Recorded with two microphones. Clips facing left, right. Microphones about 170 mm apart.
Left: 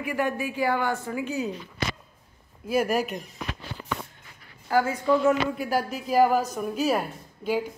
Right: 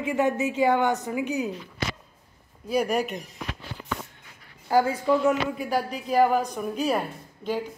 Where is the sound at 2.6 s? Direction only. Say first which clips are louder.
Even; 5° left (ahead or behind).